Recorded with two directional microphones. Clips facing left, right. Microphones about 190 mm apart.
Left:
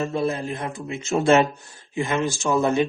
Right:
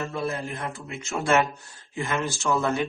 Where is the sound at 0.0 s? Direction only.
20° left (ahead or behind).